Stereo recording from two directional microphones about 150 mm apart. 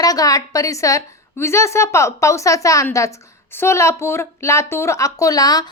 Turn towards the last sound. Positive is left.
turn(degrees=25)  # may be behind; listen again after turning